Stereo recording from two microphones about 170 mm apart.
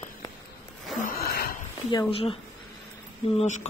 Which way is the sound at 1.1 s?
60° left (ahead or behind).